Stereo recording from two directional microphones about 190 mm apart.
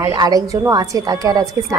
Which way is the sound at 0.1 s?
20° right (ahead or behind).